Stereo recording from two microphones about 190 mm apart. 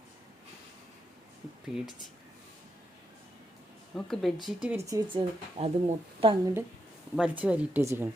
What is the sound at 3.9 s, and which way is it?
A woman's voice, centre (ahead or behind).